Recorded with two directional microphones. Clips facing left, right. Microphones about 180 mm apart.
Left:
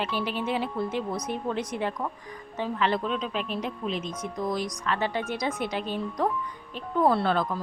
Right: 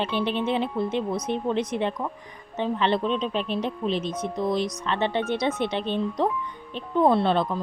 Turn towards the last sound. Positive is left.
turn(degrees=-20)  # may be behind; listen again after turning